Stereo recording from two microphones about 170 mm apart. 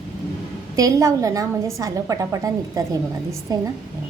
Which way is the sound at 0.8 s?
20° right (ahead or behind).